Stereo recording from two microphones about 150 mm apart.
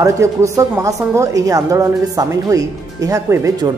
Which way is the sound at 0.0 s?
20° right (ahead or behind).